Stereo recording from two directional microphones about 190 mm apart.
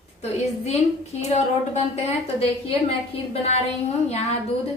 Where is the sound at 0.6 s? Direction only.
35° left (ahead or behind).